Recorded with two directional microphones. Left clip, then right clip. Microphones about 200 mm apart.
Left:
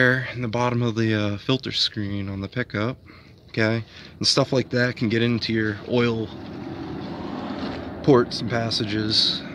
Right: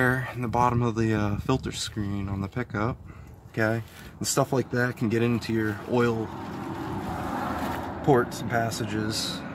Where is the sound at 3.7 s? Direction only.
35° left (ahead or behind).